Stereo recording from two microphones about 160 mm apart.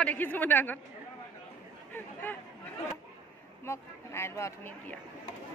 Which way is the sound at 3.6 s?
15° left (ahead or behind).